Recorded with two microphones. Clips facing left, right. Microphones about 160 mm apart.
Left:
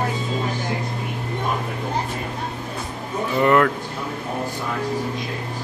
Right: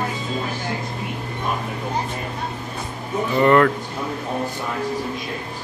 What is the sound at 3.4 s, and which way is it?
Speech, 5° left (ahead or behind).